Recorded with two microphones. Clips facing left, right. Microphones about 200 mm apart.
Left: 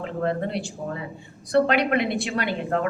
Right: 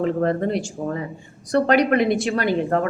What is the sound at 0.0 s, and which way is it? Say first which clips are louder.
A woman's voice: right 6 dB; 45° right (ahead or behind).